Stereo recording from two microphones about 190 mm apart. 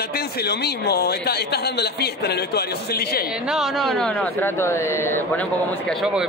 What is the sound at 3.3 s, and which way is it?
Speech, 5° right (ahead or behind).